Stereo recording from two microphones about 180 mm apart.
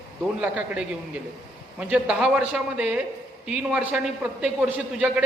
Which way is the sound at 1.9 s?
5° right (ahead or behind).